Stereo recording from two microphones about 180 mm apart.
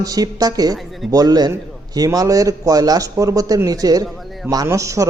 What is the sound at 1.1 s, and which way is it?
A man's voice, 20° right (ahead or behind).